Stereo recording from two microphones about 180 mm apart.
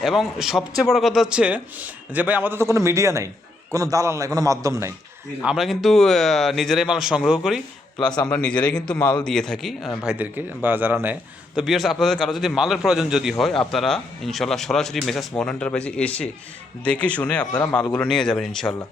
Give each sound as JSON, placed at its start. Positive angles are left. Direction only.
{"t": 0.0, "sound": "a man's voice", "side_deg": 0}
{"t": 5.4, "sound": "a man's voice", "side_deg": -5}
{"t": 10.1, "sound": "a man's voice", "side_deg": -10}